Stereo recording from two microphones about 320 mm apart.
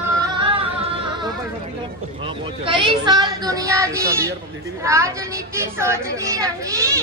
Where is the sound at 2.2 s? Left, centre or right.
Centre.